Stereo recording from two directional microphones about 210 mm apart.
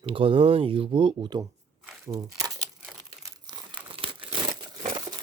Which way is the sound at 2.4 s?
15° right (ahead or behind).